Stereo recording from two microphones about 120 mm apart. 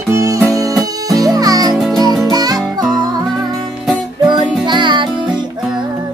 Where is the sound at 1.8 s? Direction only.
Centre (ahead or behind).